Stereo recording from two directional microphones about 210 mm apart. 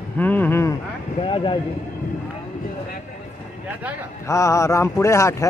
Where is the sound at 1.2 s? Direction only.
25° left (ahead or behind).